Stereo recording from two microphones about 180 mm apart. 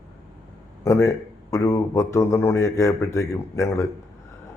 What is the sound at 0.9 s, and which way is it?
A man's voice, 15° left (ahead or behind).